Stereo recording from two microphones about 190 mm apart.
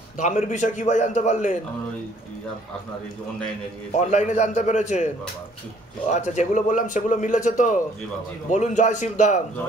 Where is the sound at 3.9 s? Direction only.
40° left (ahead or behind).